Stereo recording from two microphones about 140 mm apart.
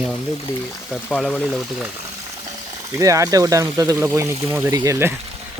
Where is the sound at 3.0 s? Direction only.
25° right (ahead or behind).